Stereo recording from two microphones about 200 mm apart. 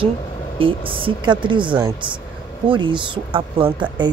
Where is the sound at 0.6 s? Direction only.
25° right (ahead or behind).